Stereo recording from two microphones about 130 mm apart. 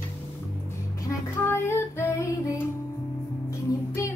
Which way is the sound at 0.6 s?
20° left (ahead or behind).